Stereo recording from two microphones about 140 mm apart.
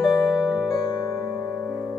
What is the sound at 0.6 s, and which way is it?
Music, 25° left (ahead or behind).